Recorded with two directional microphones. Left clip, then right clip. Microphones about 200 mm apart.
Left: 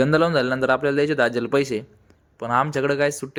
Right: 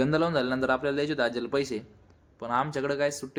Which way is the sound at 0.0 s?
25° left (ahead or behind).